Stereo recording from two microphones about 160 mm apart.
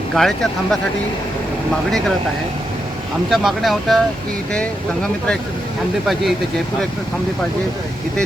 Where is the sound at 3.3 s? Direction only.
Centre (ahead or behind).